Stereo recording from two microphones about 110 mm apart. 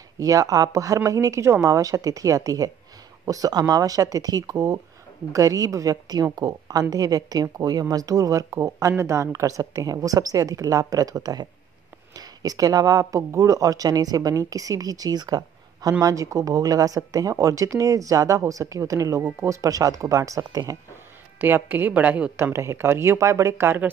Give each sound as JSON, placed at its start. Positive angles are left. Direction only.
{"t": 0.2, "sound": "speech", "side_deg": -30}
{"t": 21.4, "sound": "a woman's voice", "side_deg": -20}
{"t": 22.4, "sound": "speech", "side_deg": -25}